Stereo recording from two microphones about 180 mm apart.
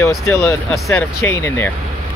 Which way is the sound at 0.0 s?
15° left (ahead or behind).